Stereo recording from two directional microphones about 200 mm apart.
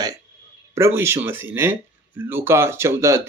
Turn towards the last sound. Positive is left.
turn(degrees=-15)  # may be behind; listen again after turning